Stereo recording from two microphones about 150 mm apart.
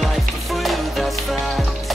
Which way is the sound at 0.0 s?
Centre (ahead or behind).